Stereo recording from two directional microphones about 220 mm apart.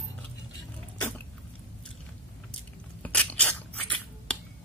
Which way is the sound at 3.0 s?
5° left (ahead or behind).